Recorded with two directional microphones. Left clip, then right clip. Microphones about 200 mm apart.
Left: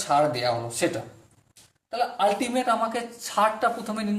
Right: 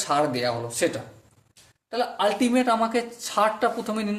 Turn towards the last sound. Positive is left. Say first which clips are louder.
# right 1 dB
turn(degrees=-35)  # may be behind; listen again after turning